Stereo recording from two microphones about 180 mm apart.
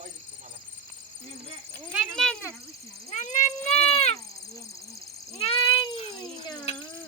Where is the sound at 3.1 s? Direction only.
45° left (ahead or behind).